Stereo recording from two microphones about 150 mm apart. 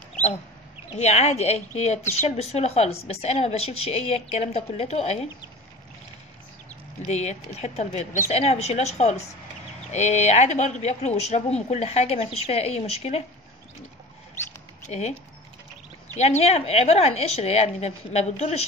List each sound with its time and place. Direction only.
0.9 s a woman's voice: 45° left (ahead or behind)
7.1 s a woman's voice: 45° left (ahead or behind)
14.9 s a woman's voice: 45° left (ahead or behind)
16.2 s a woman's voice: 45° left (ahead or behind)